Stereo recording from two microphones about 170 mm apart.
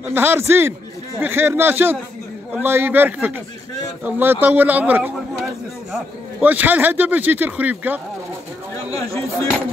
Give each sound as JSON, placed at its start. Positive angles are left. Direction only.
{"t": 0.1, "sound": "a man's voice", "side_deg": -10}
{"t": 8.9, "sound": "speech", "side_deg": 20}